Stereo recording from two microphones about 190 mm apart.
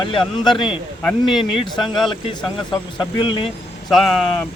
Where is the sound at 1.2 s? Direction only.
Centre (ahead or behind).